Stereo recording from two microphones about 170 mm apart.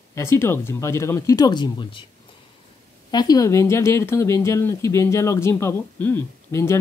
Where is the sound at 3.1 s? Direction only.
25° left (ahead or behind).